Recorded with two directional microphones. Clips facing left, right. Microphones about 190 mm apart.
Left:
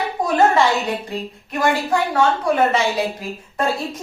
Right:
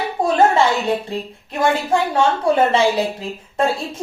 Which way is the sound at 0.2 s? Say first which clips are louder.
Right 4 dB; 25° right (ahead or behind).